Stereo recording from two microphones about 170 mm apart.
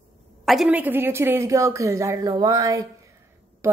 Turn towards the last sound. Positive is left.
turn(degrees=-15)  # may be behind; listen again after turning